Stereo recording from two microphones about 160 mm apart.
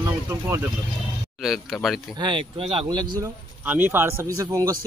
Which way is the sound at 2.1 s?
30° right (ahead or behind).